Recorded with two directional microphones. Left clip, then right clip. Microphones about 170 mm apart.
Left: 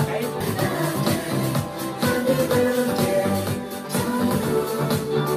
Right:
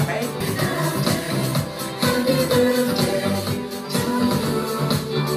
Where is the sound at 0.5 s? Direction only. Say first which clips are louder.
Right 2 dB; 30° left (ahead or behind).